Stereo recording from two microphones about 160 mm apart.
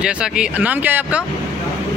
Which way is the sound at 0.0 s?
5° right (ahead or behind).